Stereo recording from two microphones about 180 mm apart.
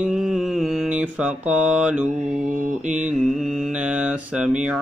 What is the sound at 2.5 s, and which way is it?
Mantra, 45° right (ahead or behind).